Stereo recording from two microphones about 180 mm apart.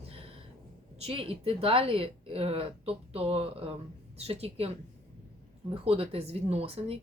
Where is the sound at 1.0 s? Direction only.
30° right (ahead or behind).